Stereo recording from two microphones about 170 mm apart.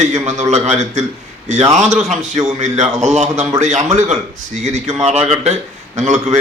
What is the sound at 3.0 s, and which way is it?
A man's voice, 40° right (ahead or behind).